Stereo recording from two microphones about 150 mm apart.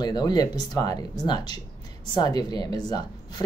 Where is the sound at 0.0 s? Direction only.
25° left (ahead or behind).